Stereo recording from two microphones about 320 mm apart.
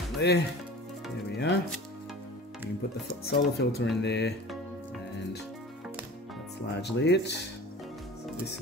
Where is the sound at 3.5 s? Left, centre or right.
Left.